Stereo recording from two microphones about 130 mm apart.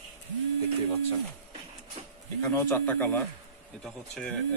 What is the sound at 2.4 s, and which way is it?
Speech, 20° left (ahead or behind).